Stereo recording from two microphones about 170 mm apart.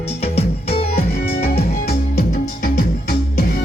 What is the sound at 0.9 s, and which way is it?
Music, 65° left (ahead or behind).